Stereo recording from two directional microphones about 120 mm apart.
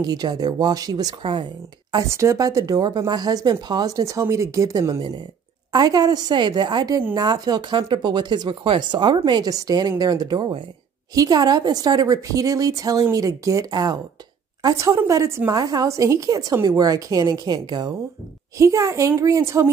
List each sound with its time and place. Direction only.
0.0 s speech: 35° right (ahead or behind)
2.0 s a woman's voice: 25° right (ahead or behind)